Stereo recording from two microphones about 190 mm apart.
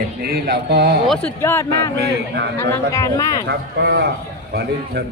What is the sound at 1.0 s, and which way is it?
Speech, 5° left (ahead or behind).